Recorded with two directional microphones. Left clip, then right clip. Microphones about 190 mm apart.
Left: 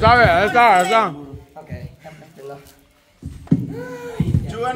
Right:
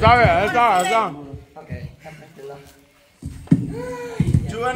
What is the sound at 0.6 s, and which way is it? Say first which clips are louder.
Speech: left 5 dB; 35° left (ahead or behind).